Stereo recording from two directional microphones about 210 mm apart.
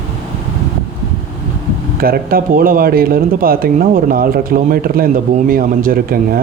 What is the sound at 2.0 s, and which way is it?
Speech, 45° right (ahead or behind).